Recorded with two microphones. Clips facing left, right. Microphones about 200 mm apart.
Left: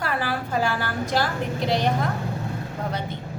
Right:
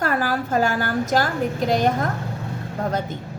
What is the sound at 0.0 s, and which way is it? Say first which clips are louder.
A woman's voice: right 4 dB; 45° right (ahead or behind).